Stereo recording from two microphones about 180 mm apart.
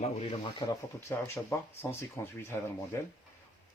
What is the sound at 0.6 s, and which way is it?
Speech, 15° left (ahead or behind).